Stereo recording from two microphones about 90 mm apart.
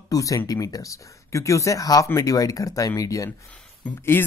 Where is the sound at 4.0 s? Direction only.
25° left (ahead or behind).